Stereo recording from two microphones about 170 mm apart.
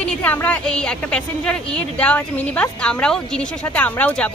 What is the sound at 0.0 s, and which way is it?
A woman's voice, 5° left (ahead or behind).